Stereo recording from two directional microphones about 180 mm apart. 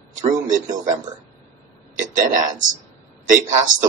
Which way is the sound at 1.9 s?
45° right (ahead or behind).